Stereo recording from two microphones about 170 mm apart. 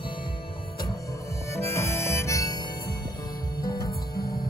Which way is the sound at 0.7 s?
20° left (ahead or behind).